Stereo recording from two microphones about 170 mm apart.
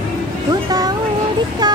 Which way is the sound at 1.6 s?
25° right (ahead or behind).